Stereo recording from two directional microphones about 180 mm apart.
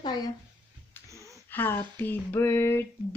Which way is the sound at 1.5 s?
10° left (ahead or behind).